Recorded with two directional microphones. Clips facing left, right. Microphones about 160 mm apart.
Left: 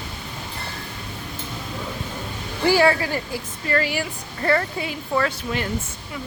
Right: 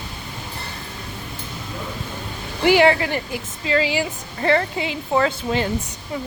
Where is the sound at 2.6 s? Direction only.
20° right (ahead or behind).